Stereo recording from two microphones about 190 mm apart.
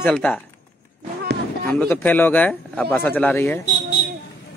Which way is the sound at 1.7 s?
10° left (ahead or behind).